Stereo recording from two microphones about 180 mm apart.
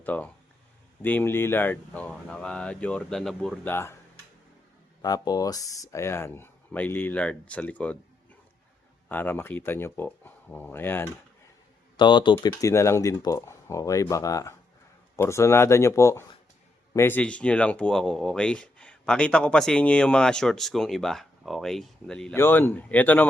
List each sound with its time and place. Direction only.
0.0 s speech: 10° left (ahead or behind)
5.0 s speech: 20° left (ahead or behind)
9.0 s speech: 10° left (ahead or behind)
11.9 s speech: 25° left (ahead or behind); by 23.2 s 10° left (ahead or behind)